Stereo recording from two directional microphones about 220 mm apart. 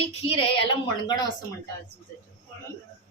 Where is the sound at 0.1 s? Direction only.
25° left (ahead or behind).